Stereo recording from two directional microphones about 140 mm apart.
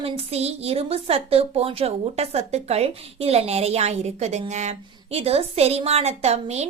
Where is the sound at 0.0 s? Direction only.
50° right (ahead or behind).